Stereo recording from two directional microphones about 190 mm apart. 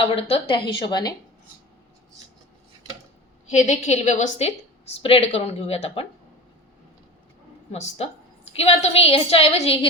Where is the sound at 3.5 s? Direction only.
40° left (ahead or behind).